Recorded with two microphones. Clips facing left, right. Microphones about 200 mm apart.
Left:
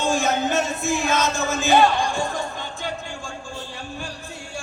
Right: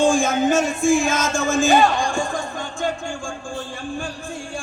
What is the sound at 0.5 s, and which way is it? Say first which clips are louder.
Chant: right 6 dB; 50° right (ahead or behind).